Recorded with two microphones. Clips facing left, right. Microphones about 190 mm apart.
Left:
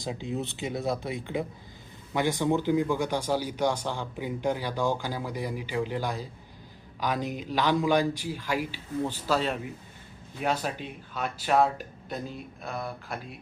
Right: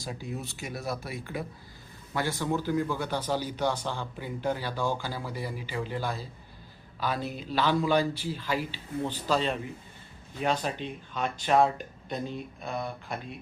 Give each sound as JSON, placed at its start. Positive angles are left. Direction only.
{"t": 0.0, "sound": "speech", "side_deg": 20}